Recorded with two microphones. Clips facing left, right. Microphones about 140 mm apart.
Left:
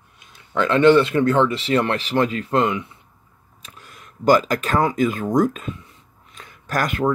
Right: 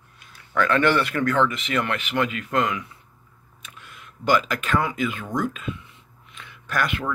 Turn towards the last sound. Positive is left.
turn(degrees=40)  # may be behind; listen again after turning